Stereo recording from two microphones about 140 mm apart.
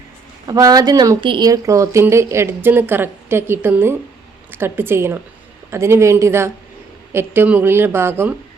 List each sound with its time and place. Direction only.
0.4 s speech: 25° right (ahead or behind)
1.5 s a woman's voice: 25° right (ahead or behind)